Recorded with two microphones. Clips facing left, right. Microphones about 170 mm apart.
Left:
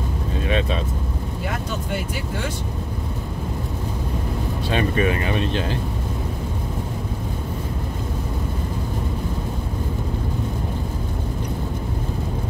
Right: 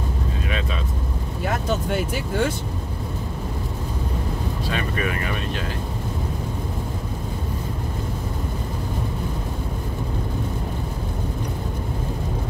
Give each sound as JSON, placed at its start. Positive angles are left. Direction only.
{"t": 0.5, "sound": "vehicle", "side_deg": 30}
{"t": 4.6, "sound": "speech", "side_deg": 25}